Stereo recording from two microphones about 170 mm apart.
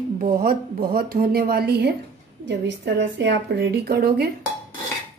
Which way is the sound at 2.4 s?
90° right.